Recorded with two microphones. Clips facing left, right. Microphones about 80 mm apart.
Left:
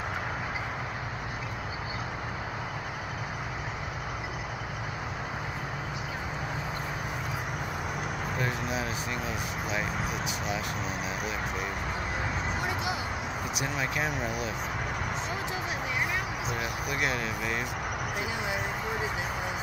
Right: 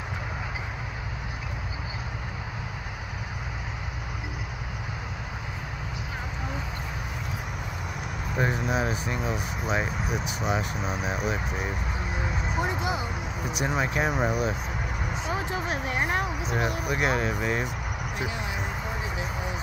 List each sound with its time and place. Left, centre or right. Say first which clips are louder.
8.4 s speech: right 7 dB; right
12.5 s speech: right 3 dB; right
15.3 s speech: right 3 dB; right
16.8 s speech: right 4 dB; right